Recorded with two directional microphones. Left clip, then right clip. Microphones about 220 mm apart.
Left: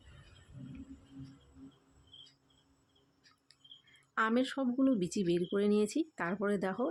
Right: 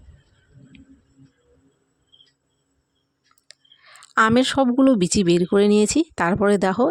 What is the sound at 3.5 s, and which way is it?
Speech, 45° right (ahead or behind).